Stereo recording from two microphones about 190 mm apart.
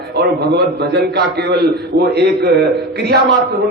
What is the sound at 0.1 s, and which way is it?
A man's voice, 60° right (ahead or behind).